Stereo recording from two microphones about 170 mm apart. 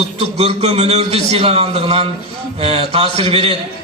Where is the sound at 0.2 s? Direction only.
40° right (ahead or behind).